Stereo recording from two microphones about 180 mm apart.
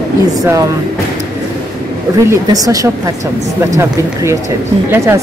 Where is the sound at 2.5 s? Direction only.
20° right (ahead or behind).